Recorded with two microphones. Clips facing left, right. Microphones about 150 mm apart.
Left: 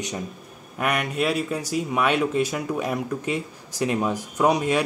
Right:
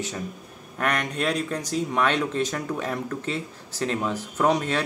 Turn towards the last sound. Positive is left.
turn(degrees=10)  # may be behind; listen again after turning